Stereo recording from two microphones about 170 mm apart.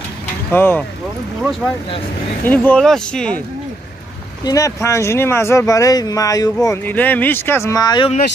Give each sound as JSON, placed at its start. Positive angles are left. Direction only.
{"t": 0.5, "sound": "speech", "side_deg": 10}
{"t": 2.4, "sound": "speech", "side_deg": 10}
{"t": 4.5, "sound": "speech", "side_deg": 20}